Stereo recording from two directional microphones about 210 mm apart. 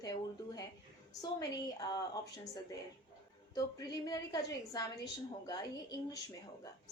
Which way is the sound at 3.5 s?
20° left (ahead or behind).